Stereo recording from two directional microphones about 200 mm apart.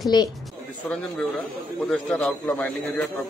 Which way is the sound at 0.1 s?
20° left (ahead or behind).